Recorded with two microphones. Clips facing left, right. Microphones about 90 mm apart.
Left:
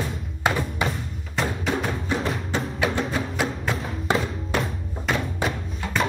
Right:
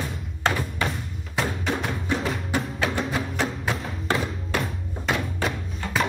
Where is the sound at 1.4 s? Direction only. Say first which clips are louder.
Left 1 dB; centre (ahead or behind).